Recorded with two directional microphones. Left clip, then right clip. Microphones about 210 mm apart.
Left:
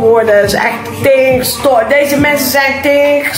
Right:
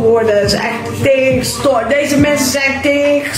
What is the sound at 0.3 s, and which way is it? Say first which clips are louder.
Speech: left 4 dB; centre (ahead or behind).